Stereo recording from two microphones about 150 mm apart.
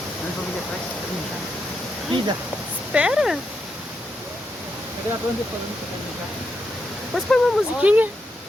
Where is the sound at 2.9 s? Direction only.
5° right (ahead or behind).